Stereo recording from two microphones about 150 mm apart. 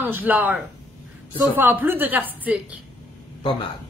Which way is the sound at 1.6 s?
10° right (ahead or behind).